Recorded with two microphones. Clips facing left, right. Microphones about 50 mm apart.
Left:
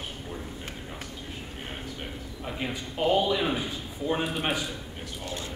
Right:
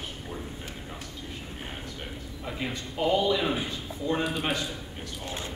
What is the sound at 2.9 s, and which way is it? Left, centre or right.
Speech, centre.